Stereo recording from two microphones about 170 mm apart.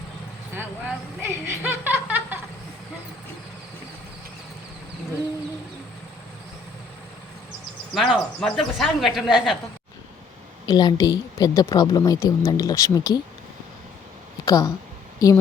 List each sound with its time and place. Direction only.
0.5 s speech: 10° right (ahead or behind)
7.9 s speech: centre (ahead or behind)
10.7 s a woman's voice: 25° left (ahead or behind)
14.4 s a woman's voice: 20° left (ahead or behind)